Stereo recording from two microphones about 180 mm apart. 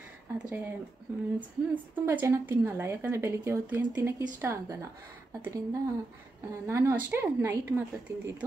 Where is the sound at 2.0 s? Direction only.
10° right (ahead or behind).